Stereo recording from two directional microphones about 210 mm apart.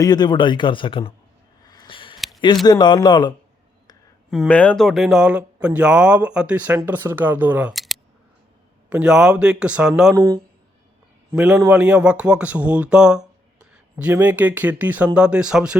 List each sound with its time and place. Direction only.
0.0 s speech: 20° left (ahead or behind)
1.6 s a sound: 20° left (ahead or behind)
2.1 s a sound: centre (ahead or behind)
2.6 s speech: 20° left (ahead or behind)
4.3 s a man's voice: 5° left (ahead or behind)
10.2 s a man's voice: 15° right (ahead or behind)